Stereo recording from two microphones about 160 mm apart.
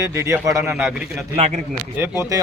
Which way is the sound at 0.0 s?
20° right (ahead or behind).